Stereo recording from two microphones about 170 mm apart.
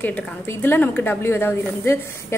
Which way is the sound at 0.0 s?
10° left (ahead or behind).